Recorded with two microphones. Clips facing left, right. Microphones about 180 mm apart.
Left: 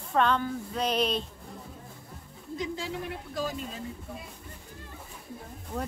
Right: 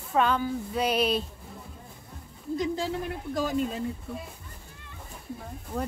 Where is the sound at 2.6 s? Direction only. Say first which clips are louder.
Right 5 dB; 40° right (ahead or behind).